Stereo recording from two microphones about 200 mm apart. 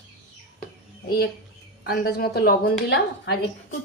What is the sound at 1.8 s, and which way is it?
A woman's voice, 50° left (ahead or behind).